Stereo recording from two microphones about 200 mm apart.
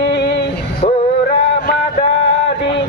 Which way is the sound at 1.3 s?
55° left (ahead or behind).